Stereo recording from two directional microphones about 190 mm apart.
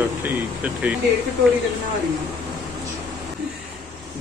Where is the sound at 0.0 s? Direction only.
10° right (ahead or behind).